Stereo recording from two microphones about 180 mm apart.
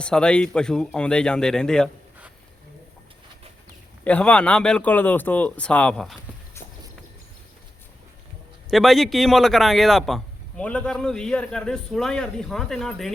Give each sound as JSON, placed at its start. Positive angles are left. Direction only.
{"t": 0.0, "sound": "speech", "side_deg": 5}
{"t": 4.0, "sound": "speech", "side_deg": 5}
{"t": 8.7, "sound": "speech", "side_deg": 0}